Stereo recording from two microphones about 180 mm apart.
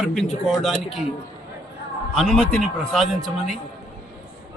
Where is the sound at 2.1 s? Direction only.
Centre (ahead or behind).